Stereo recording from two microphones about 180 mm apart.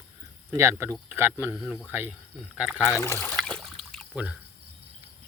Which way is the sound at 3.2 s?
5° left (ahead or behind).